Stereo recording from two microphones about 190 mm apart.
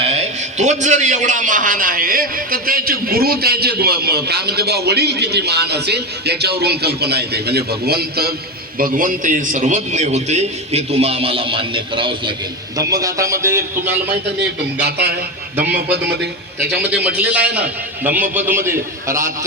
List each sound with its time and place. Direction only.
0.6 s a man's voice: 40° right (ahead or behind); by 13.9 s 15° right (ahead or behind)
14.8 s a man's voice: 60° right (ahead or behind)
16.6 s a man's voice: 5° right (ahead or behind)